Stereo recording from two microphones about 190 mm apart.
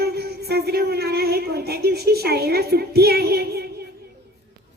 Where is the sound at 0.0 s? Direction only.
55° right (ahead or behind).